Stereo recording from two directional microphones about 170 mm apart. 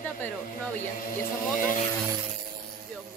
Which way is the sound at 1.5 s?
50° left (ahead or behind).